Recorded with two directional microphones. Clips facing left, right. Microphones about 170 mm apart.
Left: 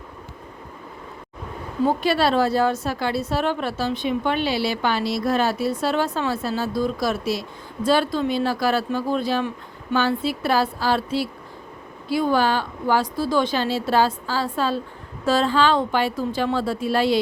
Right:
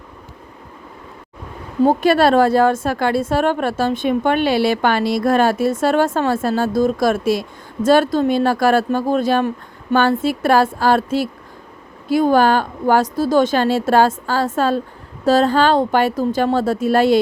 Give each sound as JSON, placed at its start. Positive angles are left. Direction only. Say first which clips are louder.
{"t": 1.8, "sound": "a woman's voice", "louder": "right 6 dB", "side_deg": -45}